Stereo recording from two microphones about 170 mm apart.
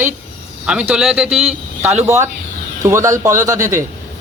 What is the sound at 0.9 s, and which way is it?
A man's voice, 5° right (ahead or behind).